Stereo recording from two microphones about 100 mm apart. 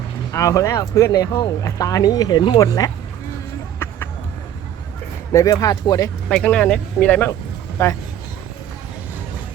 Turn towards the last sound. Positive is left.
turn(degrees=30)  # may be behind; listen again after turning